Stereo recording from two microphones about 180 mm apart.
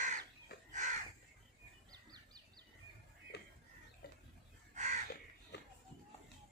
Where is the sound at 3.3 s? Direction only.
70° left (ahead or behind).